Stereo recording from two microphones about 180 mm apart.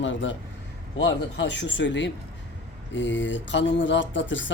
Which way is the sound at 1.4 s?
80° left.